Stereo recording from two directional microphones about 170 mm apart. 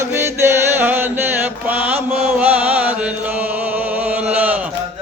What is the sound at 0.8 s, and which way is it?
Chant, 10° right (ahead or behind).